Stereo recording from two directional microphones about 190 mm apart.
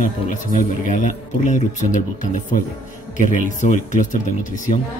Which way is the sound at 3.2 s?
40° left (ahead or behind).